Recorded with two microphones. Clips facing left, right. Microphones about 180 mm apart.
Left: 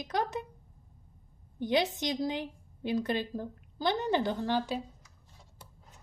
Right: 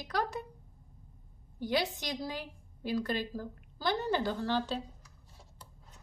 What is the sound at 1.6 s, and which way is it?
A woman's voice, 20° left (ahead or behind).